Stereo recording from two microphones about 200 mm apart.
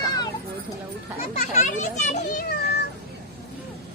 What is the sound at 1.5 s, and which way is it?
Children playing, 35° left (ahead or behind).